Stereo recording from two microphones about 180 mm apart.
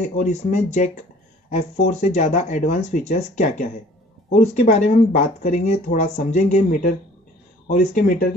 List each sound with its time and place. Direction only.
0.2 s speech: 40° left (ahead or behind)
7.6 s speech: 55° left (ahead or behind)